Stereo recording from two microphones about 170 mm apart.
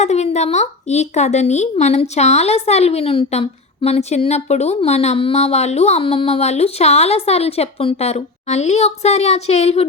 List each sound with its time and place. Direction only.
0.0 s a woman's voice: 40° left (ahead or behind)